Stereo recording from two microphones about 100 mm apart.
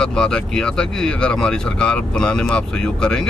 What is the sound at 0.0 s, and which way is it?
Speech, 5° left (ahead or behind).